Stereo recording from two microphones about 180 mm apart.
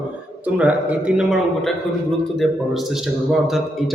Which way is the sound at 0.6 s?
5° right (ahead or behind).